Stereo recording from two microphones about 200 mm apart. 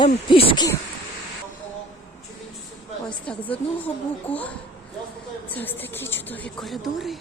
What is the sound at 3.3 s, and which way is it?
Speech, 5° left (ahead or behind).